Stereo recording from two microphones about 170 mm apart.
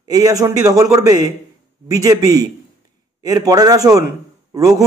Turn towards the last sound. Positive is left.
turn(degrees=-20)  # may be behind; listen again after turning